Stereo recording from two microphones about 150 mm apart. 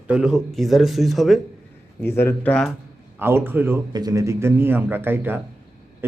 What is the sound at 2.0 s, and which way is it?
Speech, 15° left (ahead or behind).